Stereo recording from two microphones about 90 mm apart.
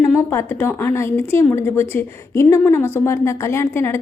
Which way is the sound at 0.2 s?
30° left (ahead or behind).